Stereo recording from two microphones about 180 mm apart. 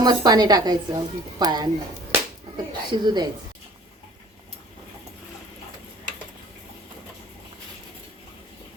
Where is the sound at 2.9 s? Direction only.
25° right (ahead or behind).